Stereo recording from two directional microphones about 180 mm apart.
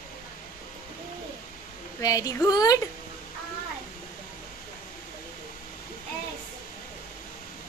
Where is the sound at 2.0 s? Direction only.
20° left (ahead or behind).